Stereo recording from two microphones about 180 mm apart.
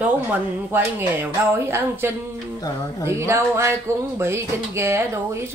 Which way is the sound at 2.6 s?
20° left (ahead or behind).